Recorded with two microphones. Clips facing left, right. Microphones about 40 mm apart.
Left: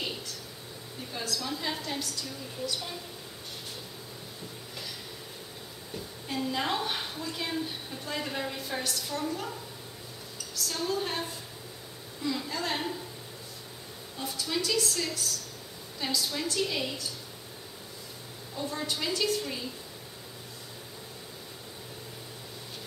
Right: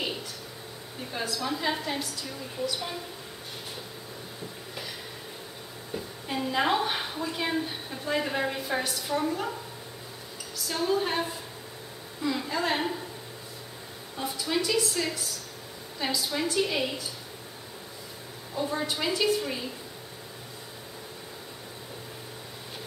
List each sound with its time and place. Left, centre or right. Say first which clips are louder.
1.1 s a woman's voice: right 4 dB; centre
5.9 s a woman's voice: right 2 dB; centre
14.1 s a woman's voice: right 4 dB; centre
18.5 s a woman's voice: right 4 dB; centre